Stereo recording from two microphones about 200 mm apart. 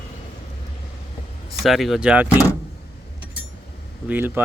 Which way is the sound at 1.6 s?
Centre (ahead or behind).